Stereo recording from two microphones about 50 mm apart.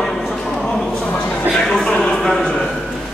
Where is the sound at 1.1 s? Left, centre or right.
Left.